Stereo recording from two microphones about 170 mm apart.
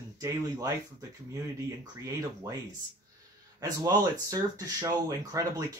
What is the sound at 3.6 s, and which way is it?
Speech, 20° right (ahead or behind).